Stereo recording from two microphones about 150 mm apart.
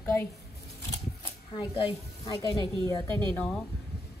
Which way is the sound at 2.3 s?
25° left (ahead or behind).